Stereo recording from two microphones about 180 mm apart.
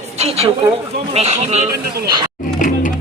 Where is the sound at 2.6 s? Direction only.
45° left (ahead or behind).